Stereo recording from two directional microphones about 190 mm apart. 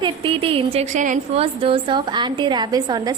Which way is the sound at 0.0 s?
30° right (ahead or behind).